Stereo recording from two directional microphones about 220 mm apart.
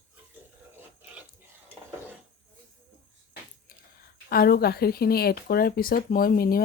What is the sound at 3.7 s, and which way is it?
Speech, 45° left (ahead or behind).